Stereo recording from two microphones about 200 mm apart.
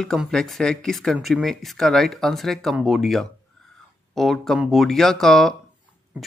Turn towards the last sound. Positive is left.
turn(degrees=0)  # may be behind; listen again after turning